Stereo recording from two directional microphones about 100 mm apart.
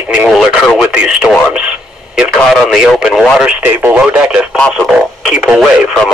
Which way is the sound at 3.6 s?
20° right (ahead or behind).